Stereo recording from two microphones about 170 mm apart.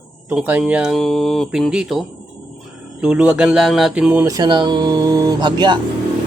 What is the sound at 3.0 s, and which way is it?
Mantra, 5° right (ahead or behind).